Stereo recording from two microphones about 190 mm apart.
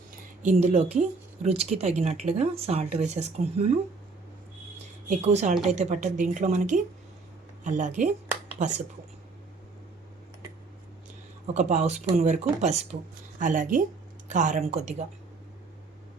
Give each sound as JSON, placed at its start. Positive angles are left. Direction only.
{"t": 0.4, "sound": "speech", "side_deg": -35}
{"t": 5.0, "sound": "speech", "side_deg": -35}
{"t": 11.5, "sound": "speech", "side_deg": -35}